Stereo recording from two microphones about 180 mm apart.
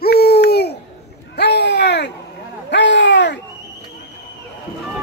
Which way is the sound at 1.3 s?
65° left (ahead or behind).